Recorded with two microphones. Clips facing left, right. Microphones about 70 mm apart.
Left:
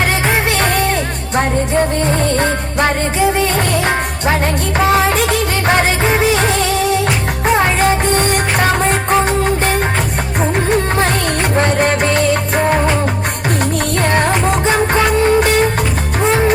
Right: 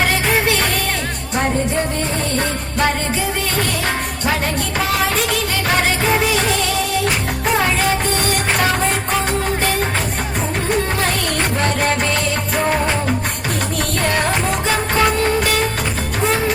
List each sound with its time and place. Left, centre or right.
4.9 s music: left
7.6 s music: left
11.5 s music: left
14.7 s music: left